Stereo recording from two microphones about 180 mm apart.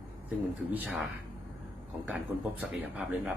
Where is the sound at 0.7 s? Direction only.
5° right (ahead or behind).